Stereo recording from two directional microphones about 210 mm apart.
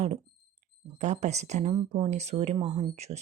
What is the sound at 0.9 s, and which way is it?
Speech, 35° right (ahead or behind).